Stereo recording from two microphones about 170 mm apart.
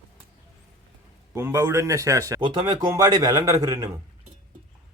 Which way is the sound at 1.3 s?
15° right (ahead or behind).